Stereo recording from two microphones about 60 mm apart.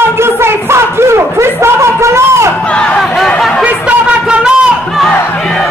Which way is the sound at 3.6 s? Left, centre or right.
Centre.